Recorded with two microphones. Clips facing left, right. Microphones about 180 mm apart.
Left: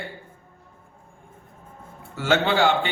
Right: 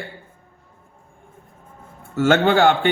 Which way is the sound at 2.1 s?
50° right (ahead or behind).